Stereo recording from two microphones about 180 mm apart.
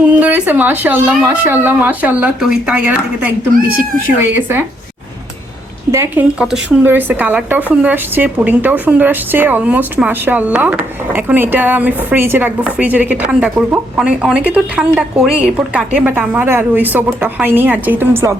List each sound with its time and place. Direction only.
0.2 s a woman's voice: 10° right (ahead or behind)
5.9 s a woman's voice: 15° right (ahead or behind)